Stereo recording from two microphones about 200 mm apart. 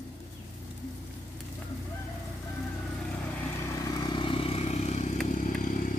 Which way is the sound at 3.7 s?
15° left (ahead or behind).